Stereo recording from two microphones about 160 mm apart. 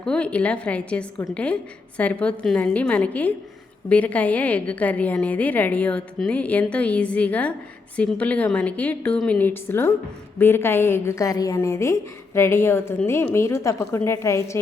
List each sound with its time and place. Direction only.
0.0 s a woman's voice: 5° left (ahead or behind)